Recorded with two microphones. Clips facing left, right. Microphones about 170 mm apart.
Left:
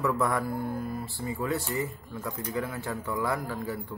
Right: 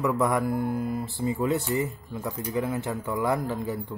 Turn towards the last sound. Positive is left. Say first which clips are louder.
# right 4 dB
turn(degrees=-20)  # may be behind; listen again after turning